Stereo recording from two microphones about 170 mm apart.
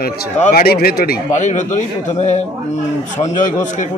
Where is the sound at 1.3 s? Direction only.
45° left (ahead or behind).